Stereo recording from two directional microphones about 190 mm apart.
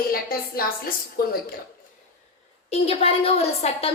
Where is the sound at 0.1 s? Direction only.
50° left (ahead or behind).